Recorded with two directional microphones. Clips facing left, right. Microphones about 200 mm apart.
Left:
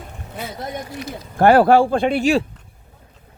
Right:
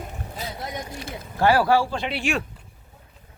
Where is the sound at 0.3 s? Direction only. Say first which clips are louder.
Left 5 dB; 50° left (ahead or behind).